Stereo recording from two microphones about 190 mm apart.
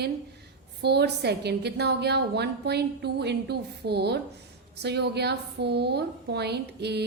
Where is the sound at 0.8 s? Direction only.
60° right (ahead or behind).